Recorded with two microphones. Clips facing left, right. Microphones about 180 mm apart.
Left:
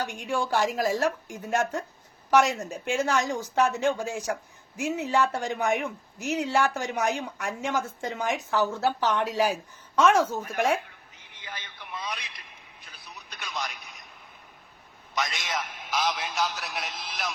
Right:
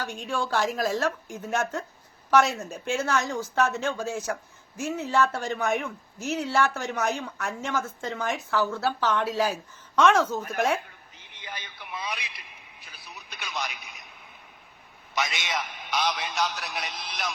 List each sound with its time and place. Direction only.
0.0 s a man's voice: 15° left (ahead or behind)
11.4 s a sound: 15° right (ahead or behind)
15.1 s a man's voice: centre (ahead or behind)